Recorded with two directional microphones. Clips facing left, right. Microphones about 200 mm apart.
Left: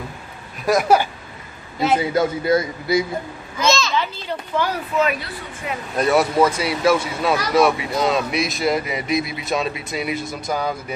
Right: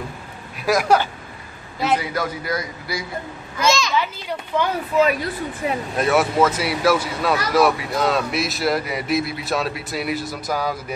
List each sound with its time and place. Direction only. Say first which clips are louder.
0.7 s speech: left 1 dB; 5° left (ahead or behind)
2.0 s a man's voice: left 6 dB; 25° left (ahead or behind)
3.5 s a sound: even; 10° right (ahead or behind)
4.5 s speech: right 1 dB; 15° right (ahead or behind)
5.0 s speech: right 3 dB; 35° right (ahead or behind)
5.9 s speech: left 2 dB; centre (ahead or behind)